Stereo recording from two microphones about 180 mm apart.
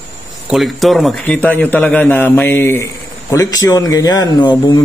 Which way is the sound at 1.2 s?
10° left (ahead or behind).